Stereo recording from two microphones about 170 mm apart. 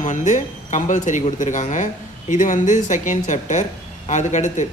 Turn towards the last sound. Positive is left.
turn(degrees=45)  # may be behind; listen again after turning